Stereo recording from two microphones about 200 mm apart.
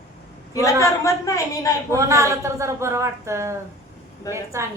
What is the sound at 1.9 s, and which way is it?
Speech, 15° right (ahead or behind).